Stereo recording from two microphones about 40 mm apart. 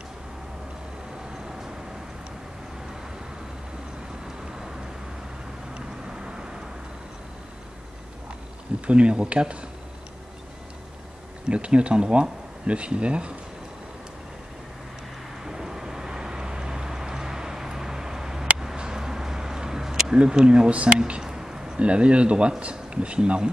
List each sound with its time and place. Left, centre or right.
5.8 s vehicle: centre
8.8 s speech: right
11.4 s speech: right
15.4 s vehicle: centre; by 20.9 s right
21.2 s a sound: centre
21.7 s speech: right